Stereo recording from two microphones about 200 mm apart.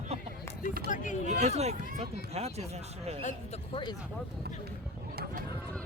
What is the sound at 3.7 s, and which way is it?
Speech, 25° left (ahead or behind).